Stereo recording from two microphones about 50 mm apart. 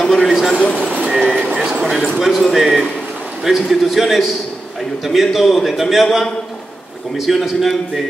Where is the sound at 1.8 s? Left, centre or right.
Centre.